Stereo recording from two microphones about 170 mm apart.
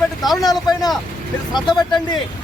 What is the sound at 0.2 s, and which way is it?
Speech, centre (ahead or behind).